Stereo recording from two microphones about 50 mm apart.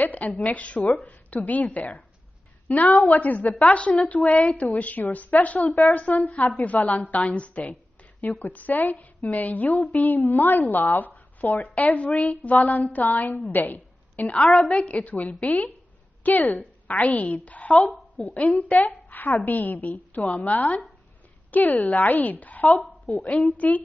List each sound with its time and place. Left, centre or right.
0.0 s a woman's voice: left
11.6 s a woman's voice: left
12.5 s a woman's voice: left